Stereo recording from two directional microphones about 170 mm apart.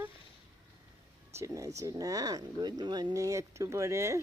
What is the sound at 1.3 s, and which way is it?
Speech, 20° right (ahead or behind).